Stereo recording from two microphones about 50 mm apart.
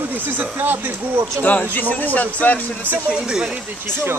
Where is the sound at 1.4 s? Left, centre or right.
Left.